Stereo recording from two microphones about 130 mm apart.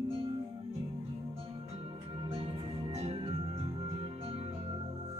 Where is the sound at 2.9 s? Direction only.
55° right (ahead or behind).